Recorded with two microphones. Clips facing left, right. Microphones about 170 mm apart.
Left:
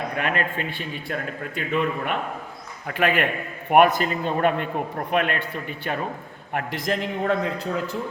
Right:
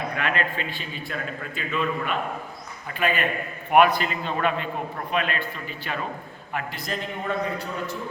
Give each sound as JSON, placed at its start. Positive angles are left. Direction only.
{"t": 0.2, "sound": "a man's voice", "side_deg": 50}
{"t": 2.8, "sound": "a man's voice", "side_deg": 75}
{"t": 3.7, "sound": "a man's voice", "side_deg": 50}